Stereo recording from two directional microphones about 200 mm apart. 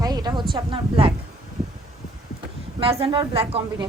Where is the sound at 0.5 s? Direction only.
25° right (ahead or behind).